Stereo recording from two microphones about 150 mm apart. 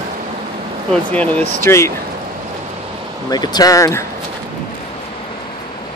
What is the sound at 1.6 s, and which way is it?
Speech, 20° left (ahead or behind).